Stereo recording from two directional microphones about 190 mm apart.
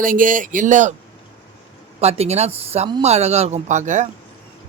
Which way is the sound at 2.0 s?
35° right (ahead or behind).